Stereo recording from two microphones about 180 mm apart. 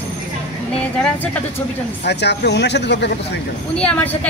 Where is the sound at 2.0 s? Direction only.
70° left (ahead or behind).